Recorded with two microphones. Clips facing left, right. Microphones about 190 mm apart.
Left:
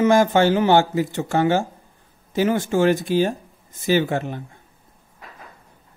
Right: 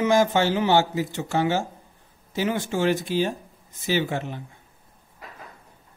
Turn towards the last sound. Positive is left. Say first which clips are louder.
# left 5 dB
turn(degrees=50)  # may be behind; listen again after turning